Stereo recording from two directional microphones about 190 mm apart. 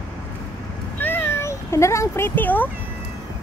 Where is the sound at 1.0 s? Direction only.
10° left (ahead or behind).